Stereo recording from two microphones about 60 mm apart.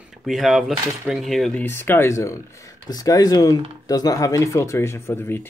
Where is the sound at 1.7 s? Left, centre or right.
Left.